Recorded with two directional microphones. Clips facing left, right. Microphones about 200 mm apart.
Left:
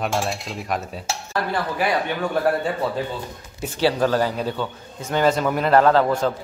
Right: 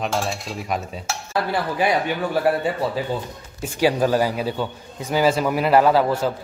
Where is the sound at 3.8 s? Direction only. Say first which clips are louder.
Right 1 dB; 10° right (ahead or behind).